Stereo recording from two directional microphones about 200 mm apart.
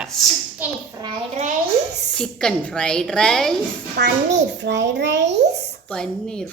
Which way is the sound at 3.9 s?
60° right (ahead or behind).